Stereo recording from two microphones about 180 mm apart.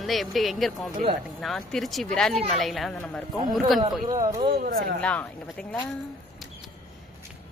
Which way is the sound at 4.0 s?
30° right (ahead or behind).